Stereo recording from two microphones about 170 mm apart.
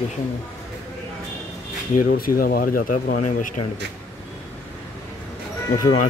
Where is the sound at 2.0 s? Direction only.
55° left (ahead or behind).